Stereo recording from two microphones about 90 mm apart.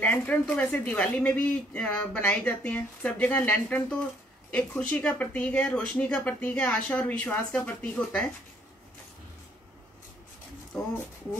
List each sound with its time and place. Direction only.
0.0 s speech: 15° left (ahead or behind)